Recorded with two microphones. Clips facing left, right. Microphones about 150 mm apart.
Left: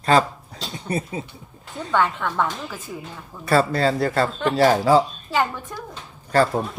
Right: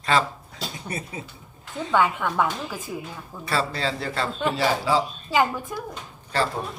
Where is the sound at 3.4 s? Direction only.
50° left (ahead or behind).